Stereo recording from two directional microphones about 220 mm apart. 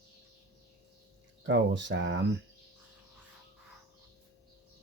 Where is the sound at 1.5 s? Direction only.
55° right (ahead or behind).